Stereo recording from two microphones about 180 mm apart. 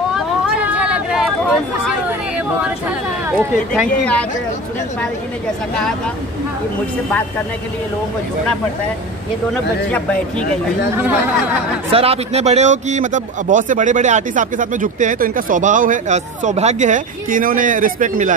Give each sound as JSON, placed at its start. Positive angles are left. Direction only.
{"t": 0.1, "sound": "a sound", "side_deg": -5}
{"t": 4.0, "sound": "speech", "side_deg": 5}
{"t": 9.5, "sound": "speech", "side_deg": 10}
{"t": 11.0, "sound": "speech", "side_deg": -10}
{"t": 11.9, "sound": "speech", "side_deg": -35}